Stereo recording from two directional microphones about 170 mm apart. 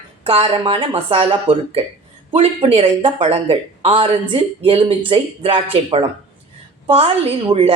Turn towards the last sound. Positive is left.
turn(degrees=-35)  # may be behind; listen again after turning